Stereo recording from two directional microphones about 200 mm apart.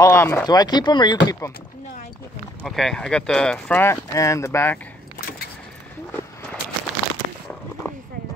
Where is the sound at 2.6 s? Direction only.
Centre (ahead or behind).